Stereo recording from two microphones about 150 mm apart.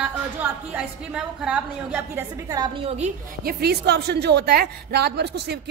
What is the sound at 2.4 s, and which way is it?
Speech, 25° right (ahead or behind).